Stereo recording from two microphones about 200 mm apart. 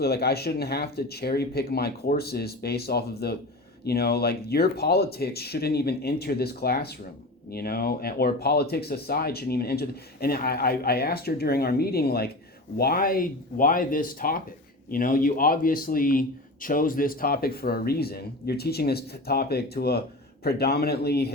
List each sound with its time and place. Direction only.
0.0 s speech: 50° left (ahead or behind)